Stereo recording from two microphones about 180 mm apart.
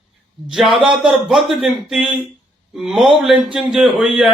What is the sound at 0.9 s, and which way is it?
Speech, 5° right (ahead or behind).